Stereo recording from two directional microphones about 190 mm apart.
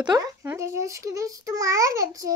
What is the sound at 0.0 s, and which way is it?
A child's voice, 20° right (ahead or behind).